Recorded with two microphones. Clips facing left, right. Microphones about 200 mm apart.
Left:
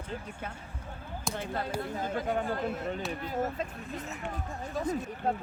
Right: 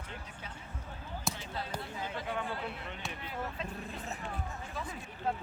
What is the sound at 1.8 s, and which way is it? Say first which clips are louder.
Speech: left 7 dB; 45° left (ahead or behind).